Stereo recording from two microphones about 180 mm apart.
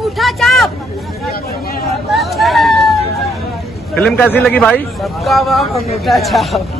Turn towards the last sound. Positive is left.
turn(degrees=0)  # may be behind; listen again after turning